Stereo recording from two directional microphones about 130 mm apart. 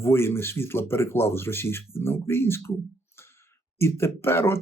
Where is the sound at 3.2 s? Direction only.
20° left (ahead or behind).